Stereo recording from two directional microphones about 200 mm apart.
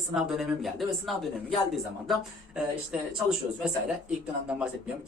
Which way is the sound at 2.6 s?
5° right (ahead or behind).